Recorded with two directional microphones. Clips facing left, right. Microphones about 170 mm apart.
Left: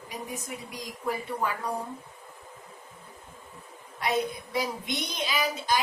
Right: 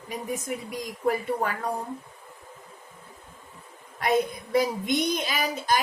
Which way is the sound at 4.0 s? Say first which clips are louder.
Right 4 dB; 50° right (ahead or behind).